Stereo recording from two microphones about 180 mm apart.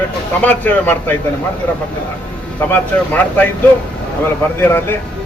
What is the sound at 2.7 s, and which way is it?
Speech, 10° left (ahead or behind).